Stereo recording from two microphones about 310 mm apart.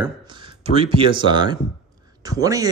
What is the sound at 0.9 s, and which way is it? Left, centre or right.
Speech, centre.